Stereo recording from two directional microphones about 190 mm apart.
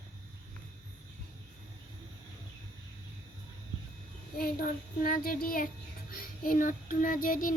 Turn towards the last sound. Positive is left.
turn(degrees=45)  # may be behind; listen again after turning